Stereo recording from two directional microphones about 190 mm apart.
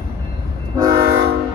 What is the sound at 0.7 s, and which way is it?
Train, 20° right (ahead or behind).